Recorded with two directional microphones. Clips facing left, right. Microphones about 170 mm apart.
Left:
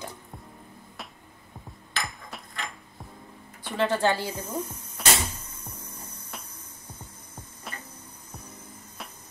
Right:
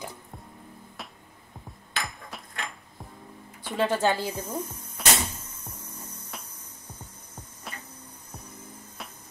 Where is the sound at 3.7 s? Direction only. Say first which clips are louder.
Even; 20° right (ahead or behind).